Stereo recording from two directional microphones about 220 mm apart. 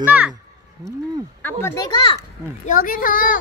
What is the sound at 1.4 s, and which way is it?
Speech, 10° left (ahead or behind).